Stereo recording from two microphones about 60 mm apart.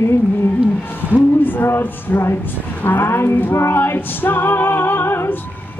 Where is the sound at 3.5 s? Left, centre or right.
Left.